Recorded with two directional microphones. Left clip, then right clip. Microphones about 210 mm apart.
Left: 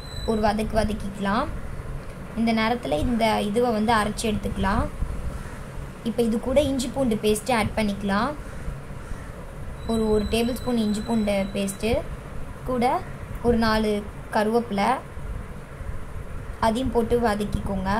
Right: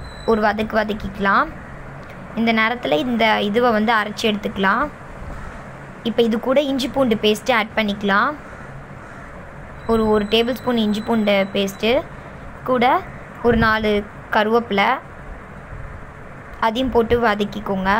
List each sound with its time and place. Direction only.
0.3 s a woman's voice: 15° right (ahead or behind)
6.0 s a woman's voice: 15° right (ahead or behind)
10.1 s a woman's voice: 15° right (ahead or behind)
16.5 s a woman's voice: 15° right (ahead or behind)